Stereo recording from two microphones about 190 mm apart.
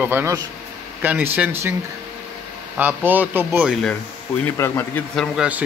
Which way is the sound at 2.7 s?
10° right (ahead or behind).